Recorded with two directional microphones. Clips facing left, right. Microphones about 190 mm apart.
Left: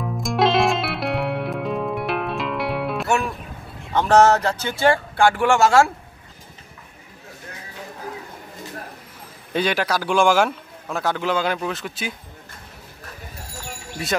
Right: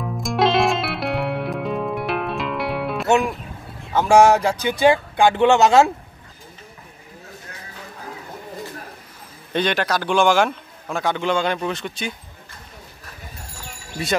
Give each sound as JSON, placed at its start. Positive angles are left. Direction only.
{"t": 0.0, "sound": "music", "side_deg": 0}
{"t": 3.1, "sound": "music", "side_deg": -15}
{"t": 3.9, "sound": "speech", "side_deg": -10}
{"t": 9.5, "sound": "speech", "side_deg": 5}
{"t": 14.0, "sound": "speech", "side_deg": 0}